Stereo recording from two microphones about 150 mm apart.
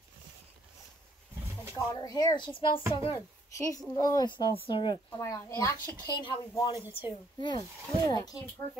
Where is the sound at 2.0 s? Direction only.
25° left (ahead or behind).